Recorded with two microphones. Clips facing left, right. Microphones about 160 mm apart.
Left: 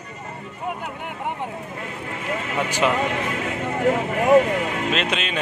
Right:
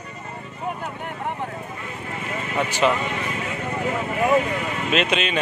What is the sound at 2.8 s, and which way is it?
Speech, 5° left (ahead or behind).